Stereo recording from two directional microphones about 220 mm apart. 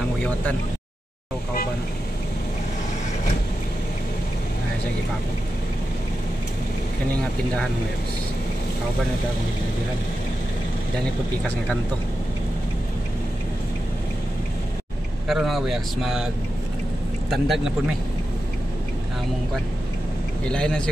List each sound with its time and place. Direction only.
15.2 s speech: centre (ahead or behind)
17.3 s speech: centre (ahead or behind)
20.4 s speech: 5° left (ahead or behind)